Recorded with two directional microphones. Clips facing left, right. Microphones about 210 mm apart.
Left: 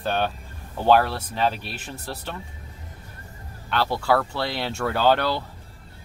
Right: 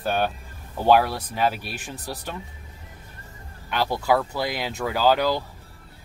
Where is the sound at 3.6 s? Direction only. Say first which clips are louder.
Even; 15° right (ahead or behind).